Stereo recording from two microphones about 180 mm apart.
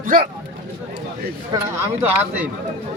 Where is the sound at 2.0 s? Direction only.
10° right (ahead or behind).